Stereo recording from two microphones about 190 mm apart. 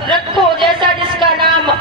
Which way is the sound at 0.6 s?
25° right (ahead or behind).